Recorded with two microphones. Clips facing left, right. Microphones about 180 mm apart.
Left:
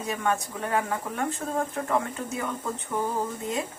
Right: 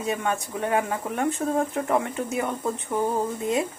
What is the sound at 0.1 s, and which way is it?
A woman's voice, 20° right (ahead or behind).